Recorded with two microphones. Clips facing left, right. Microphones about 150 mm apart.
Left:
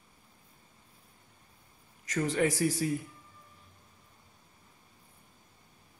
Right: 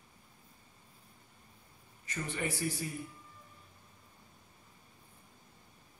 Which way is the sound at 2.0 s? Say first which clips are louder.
Left 9 dB; 90° left.